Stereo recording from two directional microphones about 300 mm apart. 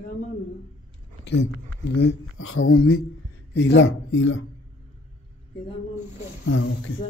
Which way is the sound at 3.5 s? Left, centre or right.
Left.